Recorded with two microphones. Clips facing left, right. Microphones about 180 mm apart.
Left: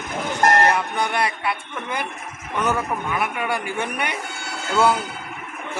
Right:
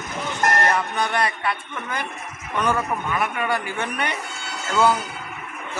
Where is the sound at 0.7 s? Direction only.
10° left (ahead or behind).